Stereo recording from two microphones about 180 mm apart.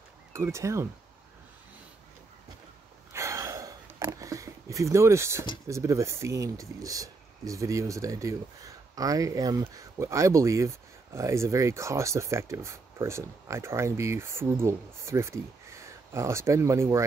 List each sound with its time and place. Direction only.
0.3 s speech: 15° right (ahead or behind)
3.1 s a sound: 15° right (ahead or behind)
5.7 s speech: 15° right (ahead or behind)